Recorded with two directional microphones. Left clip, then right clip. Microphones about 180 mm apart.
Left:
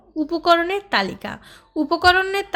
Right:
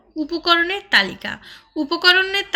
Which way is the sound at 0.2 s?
60° left (ahead or behind).